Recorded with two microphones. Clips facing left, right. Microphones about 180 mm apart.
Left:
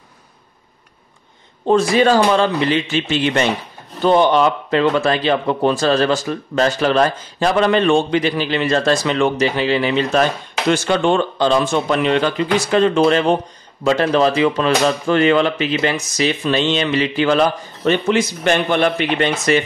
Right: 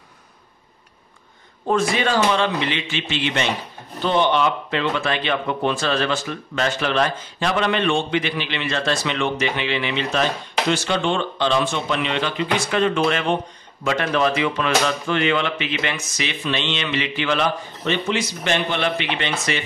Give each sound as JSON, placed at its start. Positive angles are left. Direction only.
{"t": 1.7, "sound": "speech", "side_deg": 35}
{"t": 18.0, "sound": "speech", "side_deg": 50}